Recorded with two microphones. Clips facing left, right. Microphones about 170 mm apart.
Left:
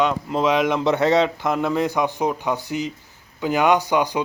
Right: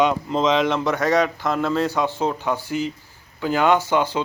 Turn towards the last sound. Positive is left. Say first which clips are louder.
# even
turn(degrees=15)  # may be behind; listen again after turning